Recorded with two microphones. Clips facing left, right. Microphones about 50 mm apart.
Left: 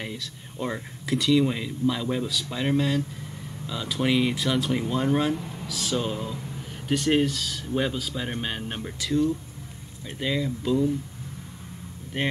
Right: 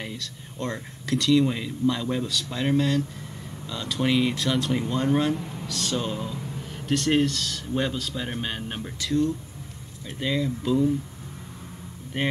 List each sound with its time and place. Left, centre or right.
0.0 s speech: centre
12.1 s speech: centre